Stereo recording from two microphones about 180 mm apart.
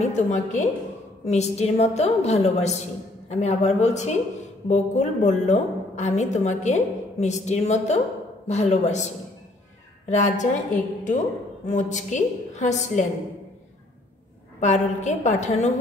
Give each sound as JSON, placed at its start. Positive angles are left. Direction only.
{"t": 0.0, "sound": "a woman's voice", "side_deg": 40}
{"t": 14.6, "sound": "a woman's voice", "side_deg": 40}